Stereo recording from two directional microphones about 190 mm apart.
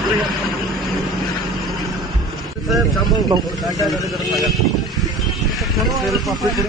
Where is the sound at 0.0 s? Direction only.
Centre (ahead or behind).